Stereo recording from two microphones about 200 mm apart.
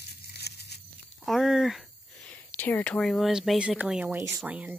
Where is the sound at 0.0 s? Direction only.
55° left (ahead or behind).